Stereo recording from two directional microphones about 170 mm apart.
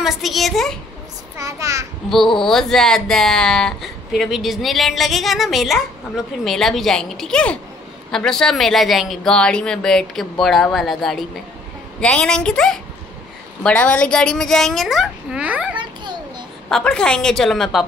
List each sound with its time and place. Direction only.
0.0 s speech: centre (ahead or behind)
1.4 s a child's voice: 20° right (ahead or behind)
2.0 s speech: centre (ahead or behind)
15.8 s children playing: 25° right (ahead or behind)
16.6 s speech: 5° left (ahead or behind)